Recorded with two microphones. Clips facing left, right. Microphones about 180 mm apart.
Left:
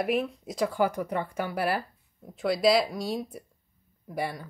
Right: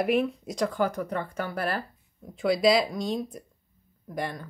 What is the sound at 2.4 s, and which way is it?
Speech, centre (ahead or behind).